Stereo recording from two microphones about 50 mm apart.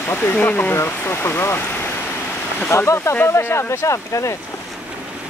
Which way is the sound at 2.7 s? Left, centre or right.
Left.